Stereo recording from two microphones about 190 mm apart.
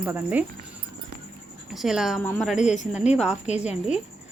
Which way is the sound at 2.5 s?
40° left (ahead or behind).